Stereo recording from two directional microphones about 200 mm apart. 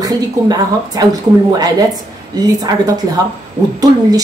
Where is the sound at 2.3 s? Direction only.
20° right (ahead or behind).